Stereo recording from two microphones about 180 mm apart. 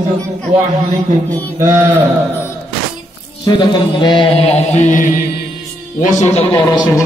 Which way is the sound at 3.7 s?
25° left (ahead or behind).